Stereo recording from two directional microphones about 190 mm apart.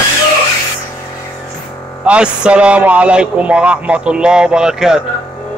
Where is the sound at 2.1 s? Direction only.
5° right (ahead or behind).